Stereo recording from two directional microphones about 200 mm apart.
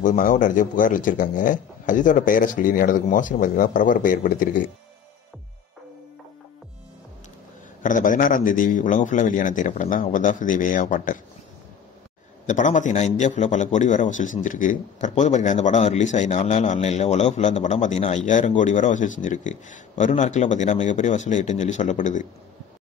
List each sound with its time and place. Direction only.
0.0 s a man's voice: 40° left (ahead or behind)
7.8 s a man's voice: 40° left (ahead or behind)
12.4 s a man's voice: 40° left (ahead or behind)